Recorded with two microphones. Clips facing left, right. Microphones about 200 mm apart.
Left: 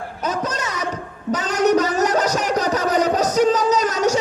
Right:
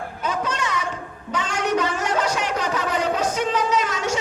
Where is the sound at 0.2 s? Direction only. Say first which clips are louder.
Left 2 dB; 40° left (ahead or behind).